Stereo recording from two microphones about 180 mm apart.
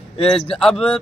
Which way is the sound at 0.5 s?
Centre (ahead or behind).